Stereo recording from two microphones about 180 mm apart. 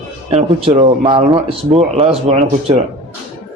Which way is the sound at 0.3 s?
35° right (ahead or behind).